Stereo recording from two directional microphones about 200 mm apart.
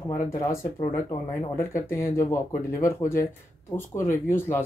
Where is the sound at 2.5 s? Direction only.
40° left (ahead or behind).